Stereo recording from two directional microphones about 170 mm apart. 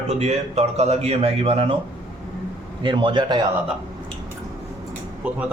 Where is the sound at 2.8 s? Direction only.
30° right (ahead or behind).